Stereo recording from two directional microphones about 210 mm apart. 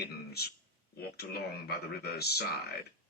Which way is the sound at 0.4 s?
50° left (ahead or behind).